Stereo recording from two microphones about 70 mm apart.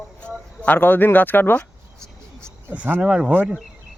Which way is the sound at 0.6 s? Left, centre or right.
Left.